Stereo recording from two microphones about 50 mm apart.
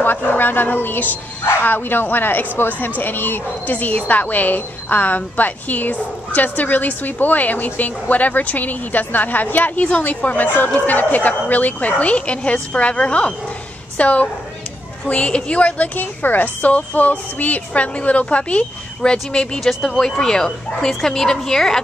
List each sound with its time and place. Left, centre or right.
0.0 s a woman's voice: left
16.0 s speech: left
19.6 s speech: centre